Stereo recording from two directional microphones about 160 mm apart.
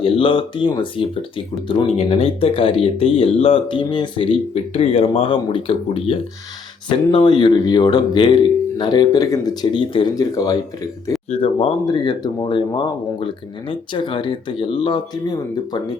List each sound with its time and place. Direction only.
0.0 s speech: 35° left (ahead or behind)
11.3 s speech: 35° left (ahead or behind)